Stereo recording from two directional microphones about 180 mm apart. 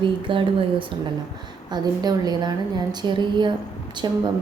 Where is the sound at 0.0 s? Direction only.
30° right (ahead or behind).